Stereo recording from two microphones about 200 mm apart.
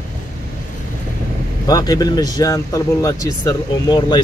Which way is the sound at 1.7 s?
20° left (ahead or behind).